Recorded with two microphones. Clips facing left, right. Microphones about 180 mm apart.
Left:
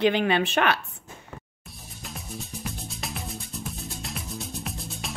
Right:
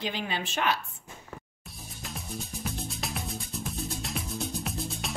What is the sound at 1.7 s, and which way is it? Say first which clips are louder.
Music: even; centre (ahead or behind).